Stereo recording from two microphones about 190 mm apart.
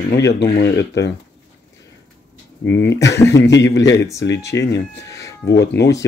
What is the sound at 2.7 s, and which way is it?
Speech, 65° left (ahead or behind).